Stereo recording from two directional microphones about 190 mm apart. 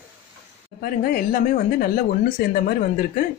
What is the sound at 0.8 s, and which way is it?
Speech, 50° left (ahead or behind).